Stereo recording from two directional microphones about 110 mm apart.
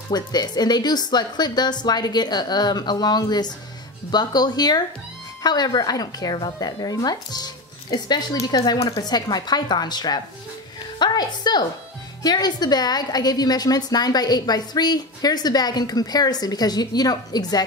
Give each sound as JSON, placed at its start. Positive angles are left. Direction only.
{"t": 0.1, "sound": "a woman's voice", "side_deg": 40}